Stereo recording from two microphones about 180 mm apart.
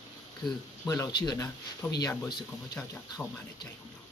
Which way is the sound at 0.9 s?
20° left (ahead or behind).